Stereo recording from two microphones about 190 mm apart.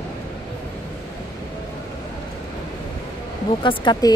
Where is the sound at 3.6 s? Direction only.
25° left (ahead or behind).